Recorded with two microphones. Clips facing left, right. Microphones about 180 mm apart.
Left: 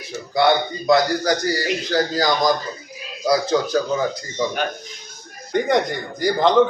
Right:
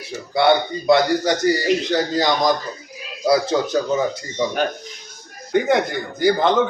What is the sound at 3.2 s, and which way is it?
Speech, 25° right (ahead or behind).